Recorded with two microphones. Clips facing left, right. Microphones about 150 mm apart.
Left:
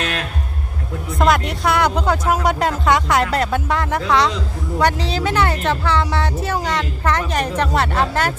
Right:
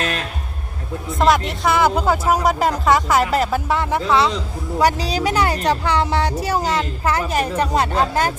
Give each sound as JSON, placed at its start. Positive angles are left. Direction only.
{"t": 1.2, "sound": "speech", "side_deg": 0}
{"t": 6.6, "sound": "a woman's voice", "side_deg": -35}
{"t": 7.0, "sound": "speech", "side_deg": -10}